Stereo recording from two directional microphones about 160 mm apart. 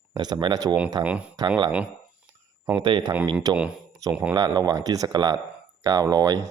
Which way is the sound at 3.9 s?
20° right (ahead or behind).